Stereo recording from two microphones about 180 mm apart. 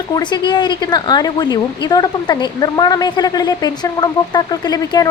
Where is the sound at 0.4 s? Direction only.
25° left (ahead or behind).